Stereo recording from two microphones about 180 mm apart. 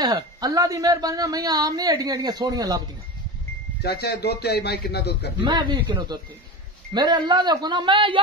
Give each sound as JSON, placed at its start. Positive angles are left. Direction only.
{"t": 0.0, "sound": "speech", "side_deg": -20}
{"t": 3.8, "sound": "a man's voice", "side_deg": 65}
{"t": 5.4, "sound": "speech", "side_deg": -25}